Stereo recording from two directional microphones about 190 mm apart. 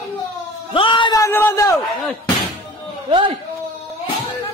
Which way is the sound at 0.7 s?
25° left (ahead or behind).